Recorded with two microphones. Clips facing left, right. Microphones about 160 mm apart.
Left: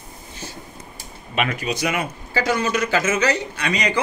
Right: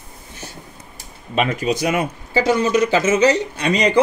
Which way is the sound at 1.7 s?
45° right (ahead or behind).